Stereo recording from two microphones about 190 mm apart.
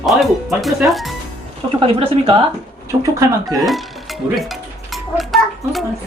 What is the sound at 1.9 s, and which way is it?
Speech, 30° right (ahead or behind).